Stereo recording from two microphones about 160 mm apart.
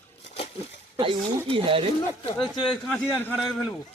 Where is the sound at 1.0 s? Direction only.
35° right (ahead or behind).